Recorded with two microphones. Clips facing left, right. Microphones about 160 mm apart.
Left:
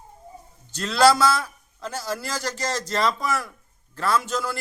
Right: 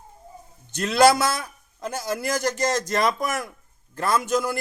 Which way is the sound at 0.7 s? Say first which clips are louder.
Right 1 dB; 20° right (ahead or behind).